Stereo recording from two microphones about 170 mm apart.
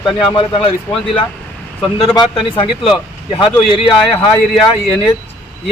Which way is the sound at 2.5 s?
30° left (ahead or behind).